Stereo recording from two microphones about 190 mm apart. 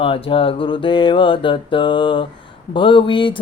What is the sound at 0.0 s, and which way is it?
Mantra, 30° left (ahead or behind).